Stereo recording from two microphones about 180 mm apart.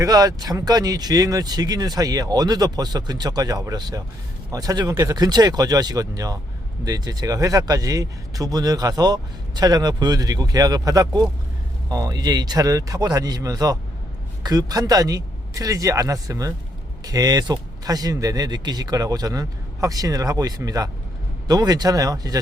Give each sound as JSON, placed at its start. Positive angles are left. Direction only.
{"t": 0.0, "sound": "speech", "side_deg": -20}